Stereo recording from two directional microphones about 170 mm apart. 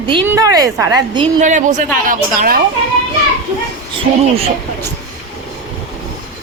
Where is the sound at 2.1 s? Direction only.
60° right (ahead or behind).